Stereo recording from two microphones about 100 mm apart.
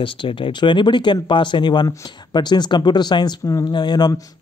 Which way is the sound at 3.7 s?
50° left (ahead or behind).